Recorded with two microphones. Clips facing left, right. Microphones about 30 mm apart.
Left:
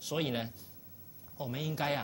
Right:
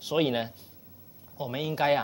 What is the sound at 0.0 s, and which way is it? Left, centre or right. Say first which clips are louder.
Speech: right 8 dB; right.